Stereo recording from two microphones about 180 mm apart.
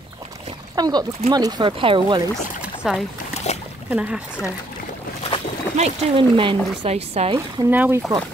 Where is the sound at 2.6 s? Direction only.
5° right (ahead or behind).